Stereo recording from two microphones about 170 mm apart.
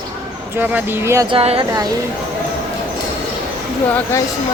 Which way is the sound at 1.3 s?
35° right (ahead or behind).